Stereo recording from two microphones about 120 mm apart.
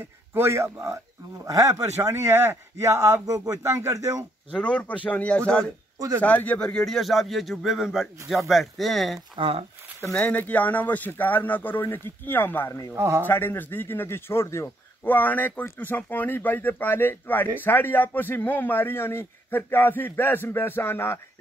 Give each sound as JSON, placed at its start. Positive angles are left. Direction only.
{"t": 0.3, "sound": "speech", "side_deg": -20}
{"t": 4.5, "sound": "a man's voice", "side_deg": 10}
{"t": 5.9, "sound": "a man's voice", "side_deg": -30}
{"t": 6.2, "sound": "speech", "side_deg": 15}
{"t": 9.4, "sound": "speech", "side_deg": -55}
{"t": 10.1, "sound": "a man's voice", "side_deg": 10}
{"t": 12.9, "sound": "speech", "side_deg": -20}
{"t": 13.3, "sound": "a man's voice", "side_deg": 15}